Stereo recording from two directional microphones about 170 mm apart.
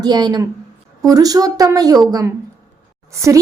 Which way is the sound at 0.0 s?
25° right (ahead or behind).